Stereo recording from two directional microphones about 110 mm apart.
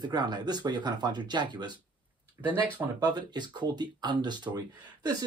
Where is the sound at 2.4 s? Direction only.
15° right (ahead or behind).